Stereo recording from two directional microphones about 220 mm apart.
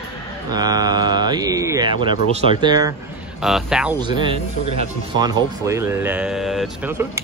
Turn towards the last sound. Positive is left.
turn(degrees=0)  # may be behind; listen again after turning